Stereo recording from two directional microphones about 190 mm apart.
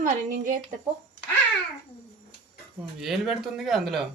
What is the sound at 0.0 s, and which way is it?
Speech, 45° right (ahead or behind).